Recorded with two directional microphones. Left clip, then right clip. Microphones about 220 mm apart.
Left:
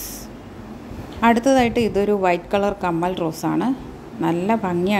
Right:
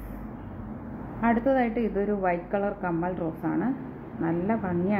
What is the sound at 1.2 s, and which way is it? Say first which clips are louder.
A woman's voice: left 8 dB; 50° left (ahead or behind).